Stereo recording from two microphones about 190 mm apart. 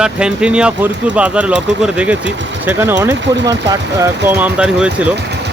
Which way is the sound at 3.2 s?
70° right (ahead or behind).